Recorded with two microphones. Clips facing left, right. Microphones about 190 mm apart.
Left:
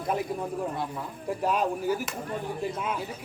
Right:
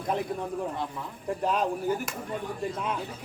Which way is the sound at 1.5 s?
5° left (ahead or behind).